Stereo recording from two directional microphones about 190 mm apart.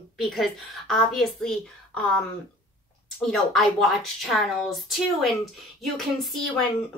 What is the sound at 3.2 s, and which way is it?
A woman's voice, centre (ahead or behind).